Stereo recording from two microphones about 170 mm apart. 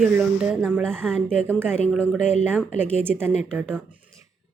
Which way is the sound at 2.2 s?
45° left (ahead or behind).